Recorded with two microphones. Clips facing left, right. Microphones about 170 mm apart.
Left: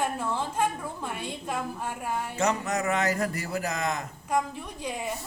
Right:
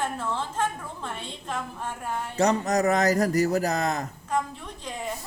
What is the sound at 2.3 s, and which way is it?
A man's voice, 35° right (ahead or behind).